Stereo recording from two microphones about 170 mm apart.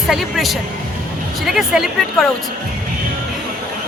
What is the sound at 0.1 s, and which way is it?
Speech, centre (ahead or behind).